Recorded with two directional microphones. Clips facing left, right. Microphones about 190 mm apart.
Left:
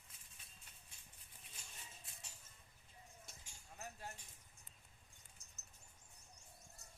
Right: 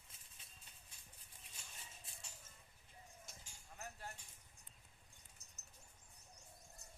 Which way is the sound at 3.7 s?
15° left (ahead or behind).